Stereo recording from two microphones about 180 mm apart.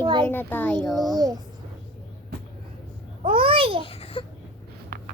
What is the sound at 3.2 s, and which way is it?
Babbling, 30° right (ahead or behind).